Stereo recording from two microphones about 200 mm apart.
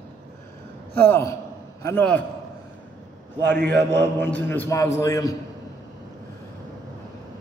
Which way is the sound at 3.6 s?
60° right (ahead or behind).